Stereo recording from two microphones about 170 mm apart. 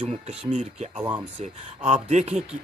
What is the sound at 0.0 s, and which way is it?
Speech, 40° right (ahead or behind).